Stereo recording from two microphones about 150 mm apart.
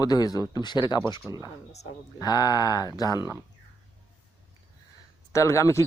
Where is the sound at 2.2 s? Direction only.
25° left (ahead or behind).